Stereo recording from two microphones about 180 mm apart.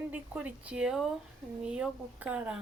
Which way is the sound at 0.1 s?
10° right (ahead or behind).